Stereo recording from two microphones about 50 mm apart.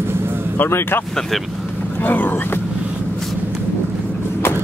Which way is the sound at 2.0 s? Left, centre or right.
Left.